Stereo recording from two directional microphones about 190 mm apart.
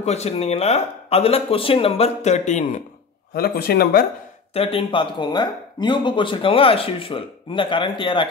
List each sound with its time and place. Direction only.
0.0 s speech: 35° left (ahead or behind)
3.3 s speech: 55° left (ahead or behind)
4.6 s speech: 30° left (ahead or behind)